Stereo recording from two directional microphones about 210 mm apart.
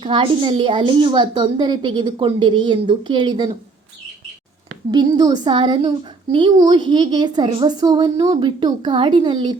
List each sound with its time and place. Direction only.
0.0 s a woman's voice: 25° right (ahead or behind)
4.9 s a woman's voice: 20° right (ahead or behind)